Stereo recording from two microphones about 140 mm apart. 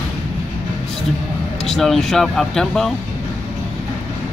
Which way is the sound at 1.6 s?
Centre (ahead or behind).